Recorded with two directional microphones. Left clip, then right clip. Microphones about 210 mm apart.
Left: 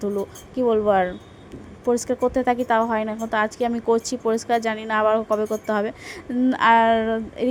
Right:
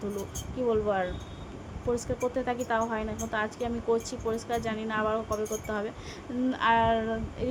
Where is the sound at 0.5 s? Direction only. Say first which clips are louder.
Left 9 dB; 35° left (ahead or behind).